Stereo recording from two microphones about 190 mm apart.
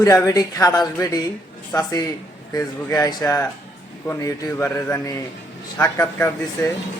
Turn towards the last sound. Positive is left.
turn(degrees=15)  # may be behind; listen again after turning